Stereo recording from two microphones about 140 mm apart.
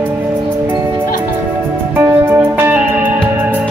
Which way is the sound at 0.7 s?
15° right (ahead or behind).